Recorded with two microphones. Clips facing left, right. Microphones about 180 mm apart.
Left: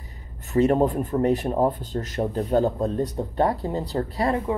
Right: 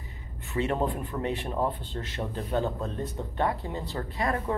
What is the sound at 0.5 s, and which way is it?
Speech, 40° left (ahead or behind).